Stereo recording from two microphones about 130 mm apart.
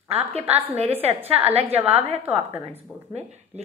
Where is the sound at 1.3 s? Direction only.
50° right (ahead or behind).